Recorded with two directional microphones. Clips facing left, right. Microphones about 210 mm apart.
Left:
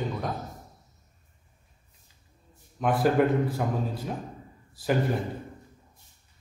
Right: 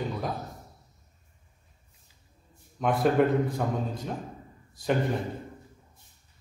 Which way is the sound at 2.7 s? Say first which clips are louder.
Even; centre (ahead or behind).